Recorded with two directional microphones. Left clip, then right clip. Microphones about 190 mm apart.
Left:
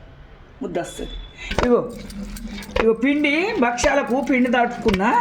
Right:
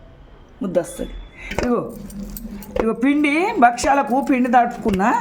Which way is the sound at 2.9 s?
30° right (ahead or behind).